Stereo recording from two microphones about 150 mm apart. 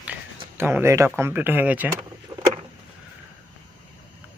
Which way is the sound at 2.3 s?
25° right (ahead or behind).